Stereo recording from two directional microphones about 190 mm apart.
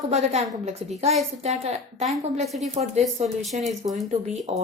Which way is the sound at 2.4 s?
Centre (ahead or behind).